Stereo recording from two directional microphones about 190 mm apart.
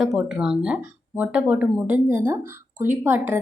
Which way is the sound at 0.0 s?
Centre (ahead or behind).